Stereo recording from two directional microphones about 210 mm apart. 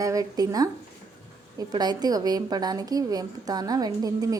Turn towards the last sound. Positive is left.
turn(degrees=-15)  # may be behind; listen again after turning